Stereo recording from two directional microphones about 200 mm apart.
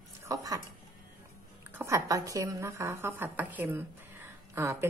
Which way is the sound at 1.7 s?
15° right (ahead or behind).